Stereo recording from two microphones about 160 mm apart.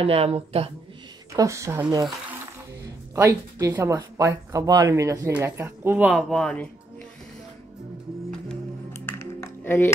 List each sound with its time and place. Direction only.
0.0 s speech: 40° right (ahead or behind)
1.3 s speech: 20° right (ahead or behind)
3.2 s speech: 20° right (ahead or behind); by 6.7 s 5° left (ahead or behind)
9.0 s music: 15° left (ahead or behind)